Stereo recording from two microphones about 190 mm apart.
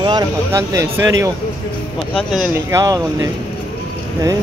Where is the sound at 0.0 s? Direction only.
20° right (ahead or behind).